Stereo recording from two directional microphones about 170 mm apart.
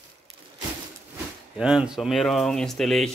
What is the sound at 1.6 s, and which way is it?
Speech, 5° right (ahead or behind).